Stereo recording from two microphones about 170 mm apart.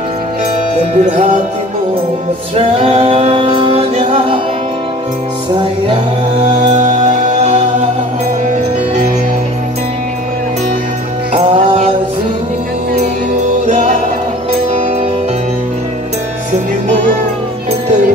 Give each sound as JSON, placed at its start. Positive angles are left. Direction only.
{"t": 0.7, "sound": "music", "side_deg": -45}
{"t": 2.5, "sound": "music", "side_deg": -40}
{"t": 6.4, "sound": "music", "side_deg": -40}
{"t": 11.3, "sound": "music", "side_deg": -35}
{"t": 13.7, "sound": "music", "side_deg": -45}